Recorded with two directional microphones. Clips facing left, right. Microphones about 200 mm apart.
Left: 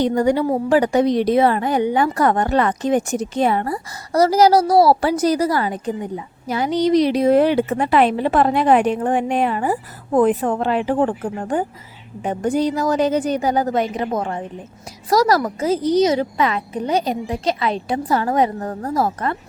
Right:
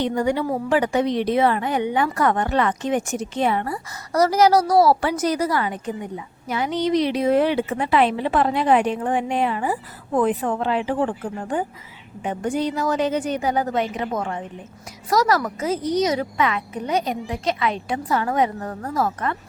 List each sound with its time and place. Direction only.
0.0 s a woman's voice: 40° left (ahead or behind)